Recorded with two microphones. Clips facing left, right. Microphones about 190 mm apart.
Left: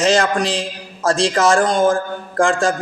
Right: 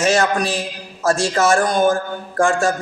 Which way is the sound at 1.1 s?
30° left (ahead or behind).